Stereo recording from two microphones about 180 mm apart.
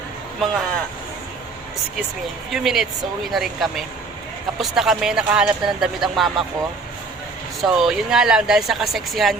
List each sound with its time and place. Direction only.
0.3 s speech: 5° left (ahead or behind)
2.5 s speech: centre (ahead or behind)
7.6 s speech: centre (ahead or behind)